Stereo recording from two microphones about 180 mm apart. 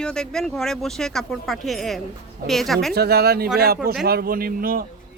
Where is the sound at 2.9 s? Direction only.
60° right (ahead or behind).